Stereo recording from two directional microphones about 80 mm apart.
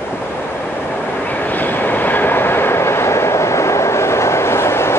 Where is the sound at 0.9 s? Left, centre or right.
Left.